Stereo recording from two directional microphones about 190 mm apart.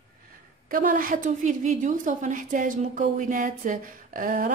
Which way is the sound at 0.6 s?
45° right (ahead or behind).